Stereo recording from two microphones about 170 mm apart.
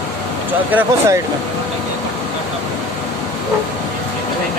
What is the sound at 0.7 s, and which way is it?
Speech, 10° right (ahead or behind).